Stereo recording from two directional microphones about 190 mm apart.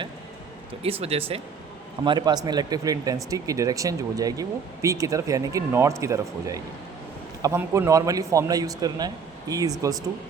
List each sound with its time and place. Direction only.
0.8 s speech: 30° right (ahead or behind)